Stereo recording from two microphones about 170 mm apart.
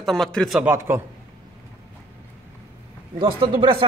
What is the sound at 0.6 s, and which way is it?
Speech, 15° right (ahead or behind).